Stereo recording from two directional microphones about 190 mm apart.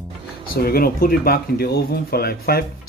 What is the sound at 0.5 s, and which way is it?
Speech, 50° left (ahead or behind).